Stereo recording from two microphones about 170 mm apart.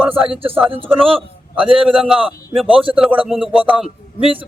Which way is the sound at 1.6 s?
5° right (ahead or behind).